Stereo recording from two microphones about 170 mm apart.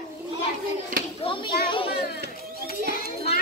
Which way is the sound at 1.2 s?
30° left (ahead or behind).